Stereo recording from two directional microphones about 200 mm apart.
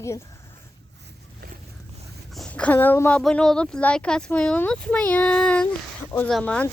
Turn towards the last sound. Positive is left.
turn(degrees=5)  # may be behind; listen again after turning